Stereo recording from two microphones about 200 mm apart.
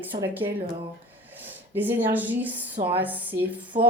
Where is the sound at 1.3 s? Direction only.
10° right (ahead or behind).